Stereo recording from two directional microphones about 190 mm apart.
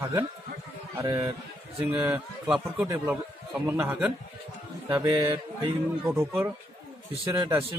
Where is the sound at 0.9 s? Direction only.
20° right (ahead or behind).